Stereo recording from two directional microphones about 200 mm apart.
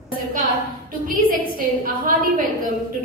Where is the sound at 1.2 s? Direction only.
45° right (ahead or behind).